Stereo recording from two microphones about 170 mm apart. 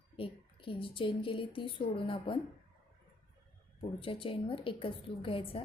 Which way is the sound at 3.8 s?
30° left (ahead or behind).